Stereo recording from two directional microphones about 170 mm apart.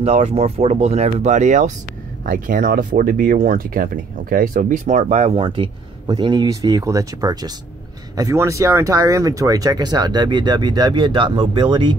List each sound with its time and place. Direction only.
0.0 s speech: 35° right (ahead or behind)
2.2 s speech: 55° right (ahead or behind); by 11.9 s 30° right (ahead or behind)